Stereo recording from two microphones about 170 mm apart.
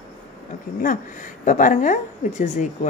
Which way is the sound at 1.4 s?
50° left (ahead or behind).